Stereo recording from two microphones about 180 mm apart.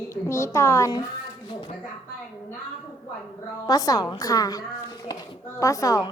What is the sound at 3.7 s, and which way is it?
A woman's voice, 20° left (ahead or behind).